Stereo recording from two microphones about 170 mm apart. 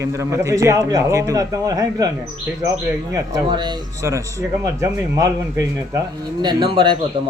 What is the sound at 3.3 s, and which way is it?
A man's voice, 25° right (ahead or behind).